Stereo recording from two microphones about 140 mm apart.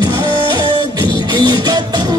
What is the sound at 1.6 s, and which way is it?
Music, 30° right (ahead or behind).